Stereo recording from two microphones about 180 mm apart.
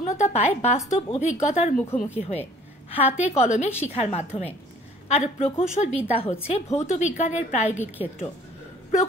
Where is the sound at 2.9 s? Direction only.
40° left (ahead or behind).